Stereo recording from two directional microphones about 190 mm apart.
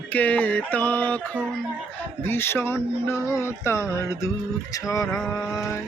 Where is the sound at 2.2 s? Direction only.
10° left (ahead or behind).